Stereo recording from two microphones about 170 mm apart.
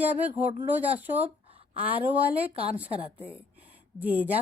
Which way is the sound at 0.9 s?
10° right (ahead or behind).